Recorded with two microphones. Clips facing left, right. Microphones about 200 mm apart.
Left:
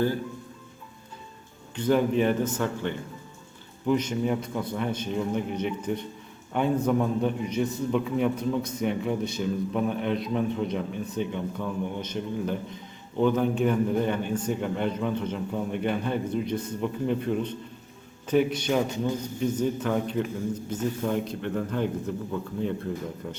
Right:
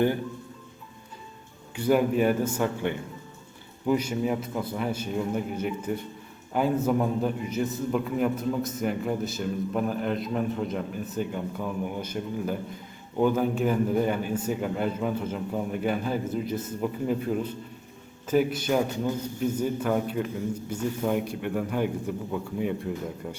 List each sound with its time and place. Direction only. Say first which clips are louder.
1.7 s a man's voice: even; 10° right (ahead or behind)